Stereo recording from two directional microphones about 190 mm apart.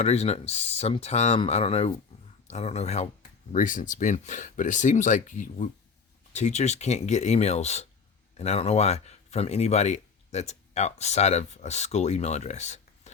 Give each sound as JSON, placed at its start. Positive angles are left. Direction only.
{"t": 0.0, "sound": "speech", "side_deg": 35}